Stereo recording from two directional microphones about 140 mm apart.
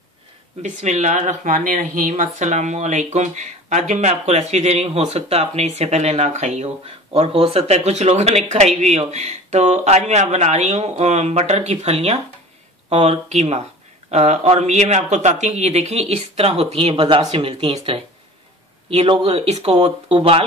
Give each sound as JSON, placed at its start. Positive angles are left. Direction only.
{"t": 0.6, "sound": "speech", "side_deg": -60}